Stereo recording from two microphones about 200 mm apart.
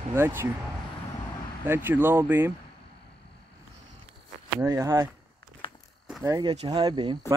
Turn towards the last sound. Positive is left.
turn(degrees=-25)  # may be behind; listen again after turning